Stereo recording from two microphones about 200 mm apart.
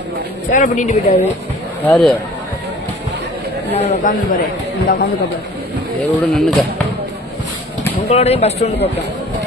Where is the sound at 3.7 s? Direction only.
40° left (ahead or behind).